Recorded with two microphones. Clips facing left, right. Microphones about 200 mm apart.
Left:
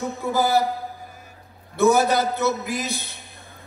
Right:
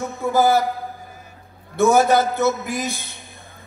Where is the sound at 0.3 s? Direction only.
50° right (ahead or behind).